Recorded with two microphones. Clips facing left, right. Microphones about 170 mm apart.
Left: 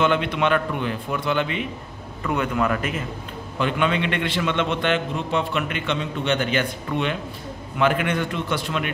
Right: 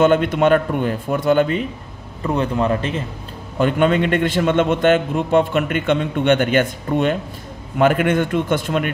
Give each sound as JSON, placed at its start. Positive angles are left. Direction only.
{"t": 0.0, "sound": "a man's voice", "side_deg": -45}
{"t": 2.2, "sound": "a man's voice", "side_deg": -30}
{"t": 3.5, "sound": "a man's voice", "side_deg": -45}